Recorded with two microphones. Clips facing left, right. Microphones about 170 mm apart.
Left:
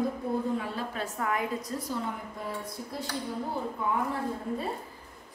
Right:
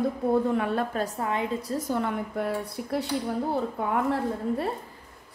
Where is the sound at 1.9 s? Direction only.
70° right (ahead or behind).